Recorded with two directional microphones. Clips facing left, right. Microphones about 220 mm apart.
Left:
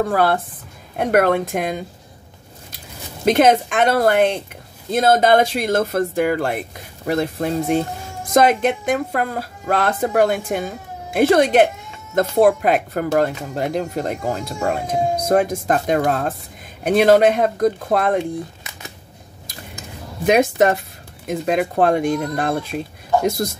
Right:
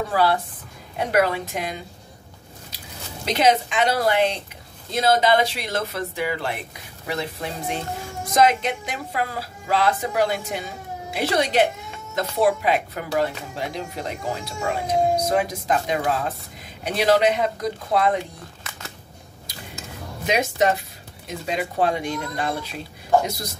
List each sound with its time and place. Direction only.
0.0 s speech: 50° left (ahead or behind)
3.3 s speech: 50° left (ahead or behind)
20.2 s speech: 50° left (ahead or behind)